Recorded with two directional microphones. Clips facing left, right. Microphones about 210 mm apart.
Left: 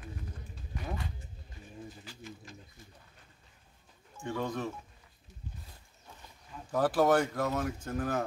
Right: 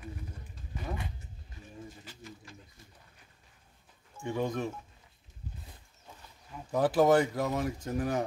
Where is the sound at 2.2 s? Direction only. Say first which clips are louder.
Left 2 dB; 20° left (ahead or behind).